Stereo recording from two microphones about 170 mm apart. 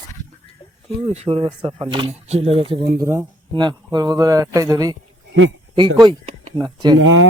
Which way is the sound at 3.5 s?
25° right (ahead or behind).